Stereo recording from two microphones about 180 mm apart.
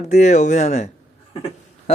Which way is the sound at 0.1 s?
40° left (ahead or behind).